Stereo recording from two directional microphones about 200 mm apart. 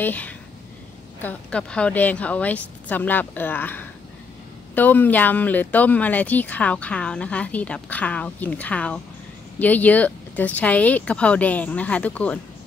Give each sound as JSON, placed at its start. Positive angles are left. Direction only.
{"t": 0.0, "sound": "speech", "side_deg": 10}